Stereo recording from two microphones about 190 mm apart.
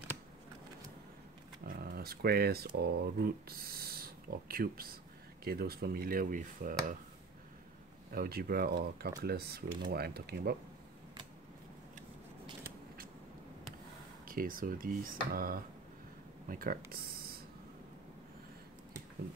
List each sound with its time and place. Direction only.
1.7 s speech: 50° right (ahead or behind)
8.1 s speech: 50° right (ahead or behind)
14.2 s speech: 50° right (ahead or behind)